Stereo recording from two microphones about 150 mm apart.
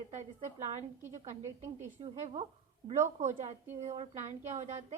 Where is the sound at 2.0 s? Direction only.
40° right (ahead or behind).